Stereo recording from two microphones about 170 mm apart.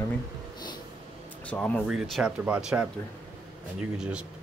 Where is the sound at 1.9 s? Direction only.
Centre (ahead or behind).